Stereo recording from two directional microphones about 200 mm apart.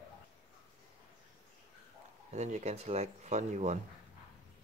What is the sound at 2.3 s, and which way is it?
Speech, 35° right (ahead or behind).